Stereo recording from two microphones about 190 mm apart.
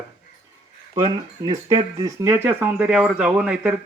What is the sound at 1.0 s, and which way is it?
A man's voice, 25° right (ahead or behind).